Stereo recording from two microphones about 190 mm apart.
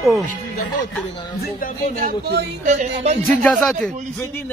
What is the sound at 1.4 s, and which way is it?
Speech, 50° left (ahead or behind).